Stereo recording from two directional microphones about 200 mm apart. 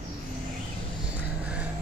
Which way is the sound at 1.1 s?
5° right (ahead or behind).